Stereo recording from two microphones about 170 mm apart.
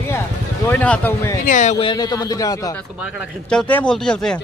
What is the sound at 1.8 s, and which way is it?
Speech, 25° left (ahead or behind).